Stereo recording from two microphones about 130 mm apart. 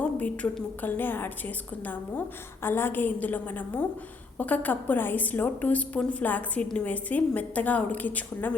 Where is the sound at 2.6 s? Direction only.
15° left (ahead or behind).